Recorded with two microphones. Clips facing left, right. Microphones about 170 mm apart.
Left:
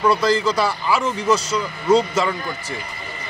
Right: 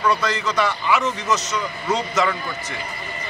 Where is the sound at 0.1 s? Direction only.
30° left (ahead or behind).